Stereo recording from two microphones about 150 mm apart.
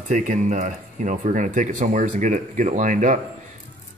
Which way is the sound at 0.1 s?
55° right (ahead or behind).